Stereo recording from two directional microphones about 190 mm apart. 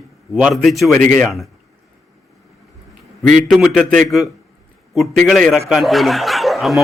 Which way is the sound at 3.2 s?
Centre (ahead or behind).